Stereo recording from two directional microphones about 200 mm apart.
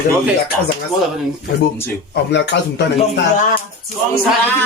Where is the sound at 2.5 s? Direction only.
60° left (ahead or behind).